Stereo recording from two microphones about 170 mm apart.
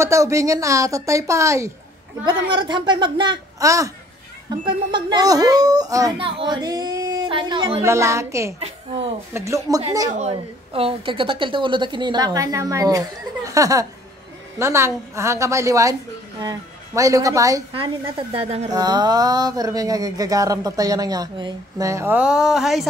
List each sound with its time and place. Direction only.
0.0 s a woman's voice: 20° right (ahead or behind)
2.2 s a sound: 30° right (ahead or behind)
6.1 s speech: 30° right (ahead or behind)
7.8 s a woman's voice: 15° right (ahead or behind)
8.5 s a woman's voice: 35° right (ahead or behind)
9.3 s a woman's voice: 20° right (ahead or behind)
10.1 s a sound: 35° right (ahead or behind); by 17.6 s 20° right (ahead or behind)
17.7 s a woman's voice: 30° right (ahead or behind)
18.7 s a sound: 25° right (ahead or behind); by 22.8 s centre (ahead or behind)